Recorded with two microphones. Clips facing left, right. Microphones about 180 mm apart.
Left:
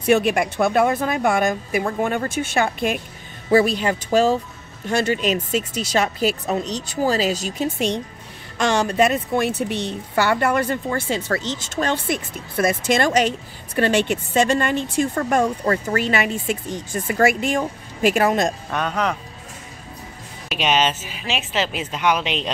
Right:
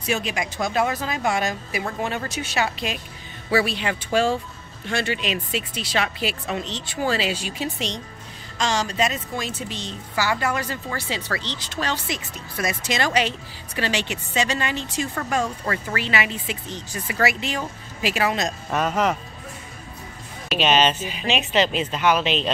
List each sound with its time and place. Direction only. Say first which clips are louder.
0.0 s a woman's voice: left 9 dB; 60° left (ahead or behind)
8.5 s a woman's voice: left 5 dB; 60° left (ahead or behind)
18.7 s speech: right 1 dB; 5° right (ahead or behind)
20.4 s speech: right 1 dB; 10° left (ahead or behind)